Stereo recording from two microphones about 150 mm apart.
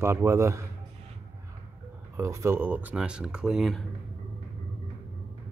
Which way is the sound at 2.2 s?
20° right (ahead or behind).